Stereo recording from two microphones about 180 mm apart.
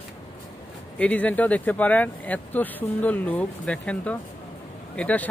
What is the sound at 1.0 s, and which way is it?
Speech, 10° left (ahead or behind).